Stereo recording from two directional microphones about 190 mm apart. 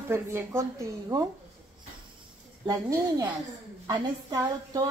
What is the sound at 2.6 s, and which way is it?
A woman's voice, 20° right (ahead or behind).